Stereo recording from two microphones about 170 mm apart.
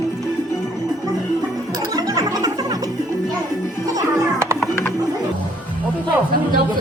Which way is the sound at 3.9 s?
20° right (ahead or behind).